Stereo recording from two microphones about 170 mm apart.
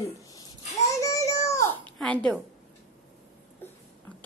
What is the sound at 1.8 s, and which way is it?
Speech, 5° left (ahead or behind).